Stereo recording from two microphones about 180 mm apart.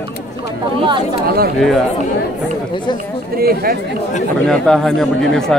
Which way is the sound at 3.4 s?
55° right (ahead or behind).